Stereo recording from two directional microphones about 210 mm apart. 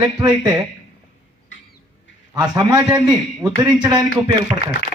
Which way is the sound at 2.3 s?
20° right (ahead or behind).